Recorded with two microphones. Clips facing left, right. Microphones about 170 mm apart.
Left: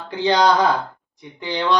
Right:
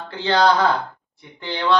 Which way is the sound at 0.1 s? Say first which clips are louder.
Left 1 dB; 15° left (ahead or behind).